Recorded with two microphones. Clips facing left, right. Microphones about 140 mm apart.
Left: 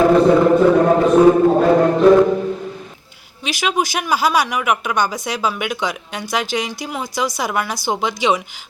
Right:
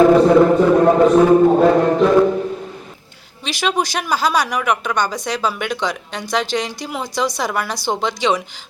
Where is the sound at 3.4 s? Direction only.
5° left (ahead or behind).